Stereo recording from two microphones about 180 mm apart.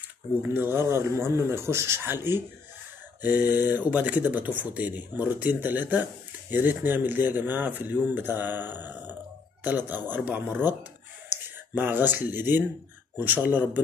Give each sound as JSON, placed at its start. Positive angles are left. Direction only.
{"t": 0.4, "sound": "speech", "side_deg": -10}